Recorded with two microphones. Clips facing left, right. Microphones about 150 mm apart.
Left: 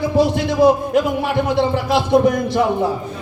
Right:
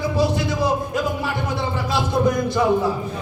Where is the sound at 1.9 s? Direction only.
60° left (ahead or behind).